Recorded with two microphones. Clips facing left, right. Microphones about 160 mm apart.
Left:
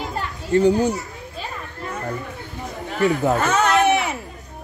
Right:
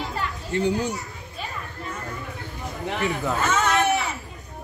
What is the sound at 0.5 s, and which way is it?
Speech, 40° left (ahead or behind).